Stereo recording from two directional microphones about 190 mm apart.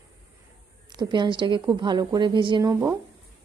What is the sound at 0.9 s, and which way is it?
A woman's voice, 25° right (ahead or behind).